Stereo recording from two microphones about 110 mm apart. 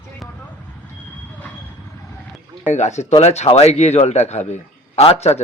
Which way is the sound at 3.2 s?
75° left (ahead or behind).